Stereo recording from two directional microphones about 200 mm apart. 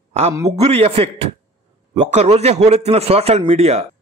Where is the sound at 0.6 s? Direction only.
30° right (ahead or behind).